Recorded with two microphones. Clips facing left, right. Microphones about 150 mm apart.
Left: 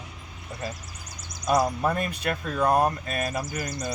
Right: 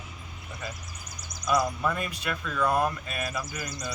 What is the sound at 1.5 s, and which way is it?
Speech, 40° left (ahead or behind).